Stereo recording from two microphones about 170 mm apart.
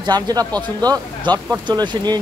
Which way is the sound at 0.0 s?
25° right (ahead or behind).